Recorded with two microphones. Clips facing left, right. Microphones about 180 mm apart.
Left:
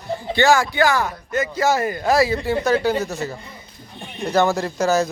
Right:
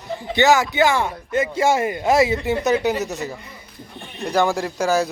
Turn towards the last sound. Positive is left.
turn(degrees=-10)  # may be behind; listen again after turning